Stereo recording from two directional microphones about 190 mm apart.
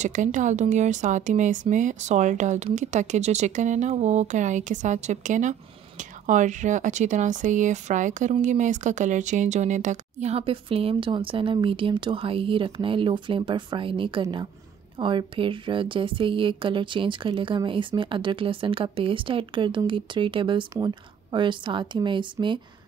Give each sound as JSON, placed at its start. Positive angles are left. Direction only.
{"t": 0.0, "sound": "a woman's voice", "side_deg": -40}